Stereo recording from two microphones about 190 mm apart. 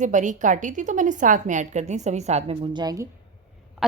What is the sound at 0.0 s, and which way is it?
A woman's voice, 40° right (ahead or behind).